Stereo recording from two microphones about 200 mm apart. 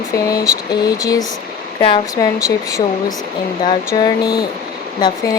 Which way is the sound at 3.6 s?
20° left (ahead or behind).